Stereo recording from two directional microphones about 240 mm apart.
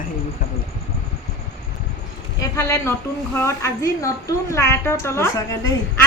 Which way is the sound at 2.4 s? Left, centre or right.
Centre.